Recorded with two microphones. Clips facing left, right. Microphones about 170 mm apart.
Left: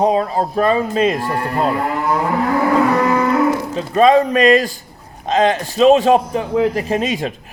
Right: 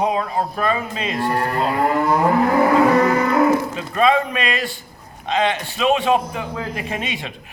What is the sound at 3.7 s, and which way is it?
A man's voice, 35° left (ahead or behind).